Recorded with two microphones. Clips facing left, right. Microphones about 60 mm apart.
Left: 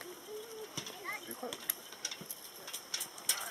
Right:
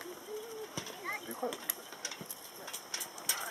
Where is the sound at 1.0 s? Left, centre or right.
Centre.